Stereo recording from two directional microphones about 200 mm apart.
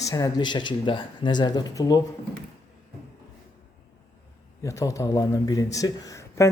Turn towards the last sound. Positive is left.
turn(degrees=15)  # may be behind; listen again after turning